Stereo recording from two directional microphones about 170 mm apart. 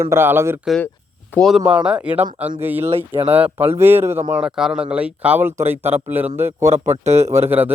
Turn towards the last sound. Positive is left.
turn(degrees=-10)  # may be behind; listen again after turning